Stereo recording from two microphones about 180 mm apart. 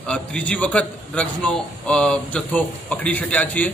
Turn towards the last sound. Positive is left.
turn(degrees=10)  # may be behind; listen again after turning